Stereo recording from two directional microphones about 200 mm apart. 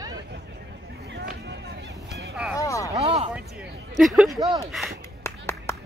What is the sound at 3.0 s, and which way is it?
Speech, 30° right (ahead or behind).